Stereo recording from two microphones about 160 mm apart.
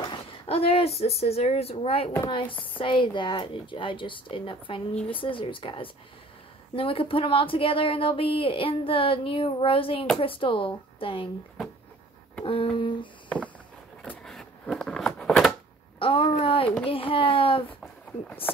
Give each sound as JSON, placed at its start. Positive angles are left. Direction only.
{"t": 0.1, "sound": "speech", "side_deg": 40}
{"t": 12.4, "sound": "speech", "side_deg": 35}
{"t": 14.0, "sound": "a sound", "side_deg": 5}
{"t": 16.0, "sound": "speech", "side_deg": 35}